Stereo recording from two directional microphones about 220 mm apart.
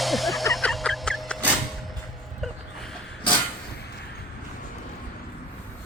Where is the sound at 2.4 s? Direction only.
Centre (ahead or behind).